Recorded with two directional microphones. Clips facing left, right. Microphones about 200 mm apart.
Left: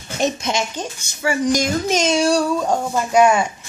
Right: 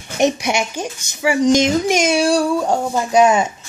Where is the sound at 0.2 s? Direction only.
15° right (ahead or behind).